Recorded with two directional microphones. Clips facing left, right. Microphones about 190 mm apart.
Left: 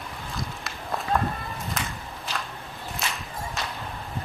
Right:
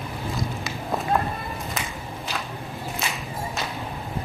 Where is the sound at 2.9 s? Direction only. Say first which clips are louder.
Right 1 dB; centre (ahead or behind).